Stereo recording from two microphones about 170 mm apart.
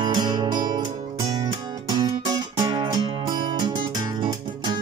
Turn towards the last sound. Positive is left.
turn(degrees=-25)  # may be behind; listen again after turning